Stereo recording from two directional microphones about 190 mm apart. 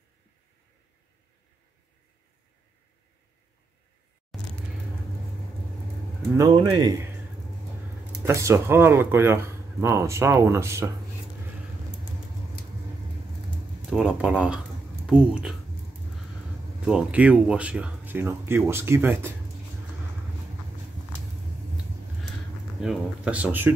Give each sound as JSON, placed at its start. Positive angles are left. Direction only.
{"t": 4.3, "sound": "a sound", "side_deg": 0}
{"t": 6.3, "sound": "speech", "side_deg": -20}
{"t": 8.2, "sound": "speech", "side_deg": -15}
{"t": 13.8, "sound": "speech", "side_deg": -5}
{"t": 16.8, "sound": "speech", "side_deg": -5}
{"t": 22.8, "sound": "speech", "side_deg": -5}